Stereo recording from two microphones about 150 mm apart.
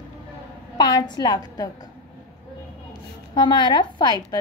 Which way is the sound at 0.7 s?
25° left (ahead or behind).